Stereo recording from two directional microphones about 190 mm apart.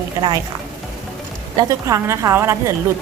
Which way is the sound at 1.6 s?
15° right (ahead or behind).